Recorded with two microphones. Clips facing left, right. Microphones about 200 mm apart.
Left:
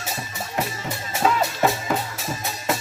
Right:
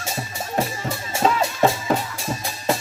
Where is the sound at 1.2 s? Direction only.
30° right (ahead or behind).